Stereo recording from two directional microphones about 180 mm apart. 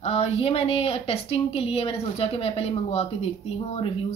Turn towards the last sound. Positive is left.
turn(degrees=35)  # may be behind; listen again after turning